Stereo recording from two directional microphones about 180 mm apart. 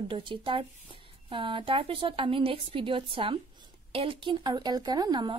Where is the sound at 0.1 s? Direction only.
30° right (ahead or behind).